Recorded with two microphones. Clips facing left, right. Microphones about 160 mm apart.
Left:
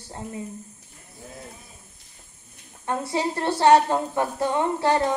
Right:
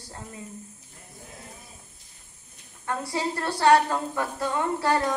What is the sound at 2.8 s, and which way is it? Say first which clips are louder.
A woman's voice: left 3 dB; 20° left (ahead or behind).